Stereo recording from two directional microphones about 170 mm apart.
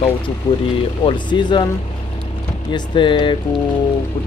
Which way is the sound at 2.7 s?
30° left (ahead or behind).